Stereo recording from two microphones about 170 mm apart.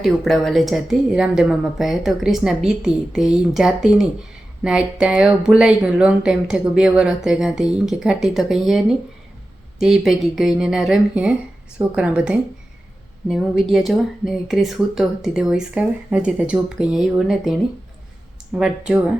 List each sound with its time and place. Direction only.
0.0 s speech: centre (ahead or behind)